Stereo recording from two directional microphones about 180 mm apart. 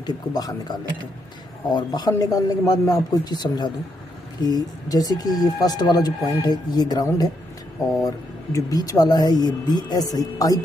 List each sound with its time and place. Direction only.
0.0 s speech: 20° left (ahead or behind)